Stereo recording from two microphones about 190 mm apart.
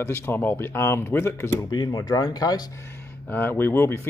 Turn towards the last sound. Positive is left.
turn(degrees=10)  # may be behind; listen again after turning